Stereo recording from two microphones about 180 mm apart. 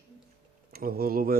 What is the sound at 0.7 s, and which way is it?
Speech, 55° right (ahead or behind).